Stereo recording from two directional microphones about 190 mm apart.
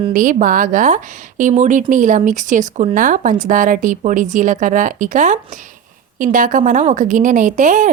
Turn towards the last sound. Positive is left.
turn(degrees=-40)  # may be behind; listen again after turning